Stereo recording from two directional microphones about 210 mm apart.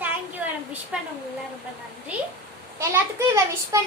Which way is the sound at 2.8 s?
15° right (ahead or behind).